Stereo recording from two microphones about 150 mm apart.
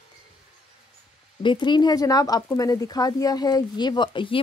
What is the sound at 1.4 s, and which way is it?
Speech, 30° left (ahead or behind).